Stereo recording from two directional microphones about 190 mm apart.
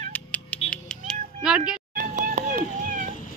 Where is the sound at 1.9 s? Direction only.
45° right (ahead or behind).